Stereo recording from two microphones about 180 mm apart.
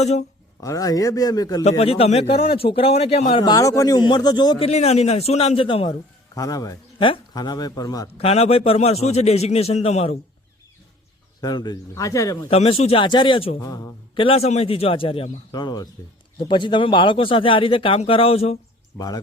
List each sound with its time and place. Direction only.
0.0 s a man's voice: 40° left (ahead or behind)
0.6 s speech: 20° left (ahead or behind)
1.8 s a man's voice: 35° left (ahead or behind)
3.4 s speech: 20° left (ahead or behind)
6.3 s speech: 20° left (ahead or behind)
8.2 s a man's voice: 35° left (ahead or behind)
11.3 s speech: 20° left (ahead or behind)
12.5 s a man's voice: 30° left (ahead or behind)
13.6 s speech: 20° left (ahead or behind)
14.3 s a man's voice: 35° left (ahead or behind)
18.9 s speech: 20° left (ahead or behind)